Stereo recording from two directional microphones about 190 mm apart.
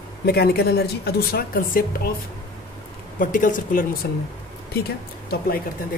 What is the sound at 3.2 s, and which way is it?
Speech, 45° left (ahead or behind).